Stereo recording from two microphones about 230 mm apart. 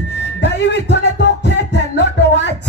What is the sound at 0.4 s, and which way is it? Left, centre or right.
Music, left.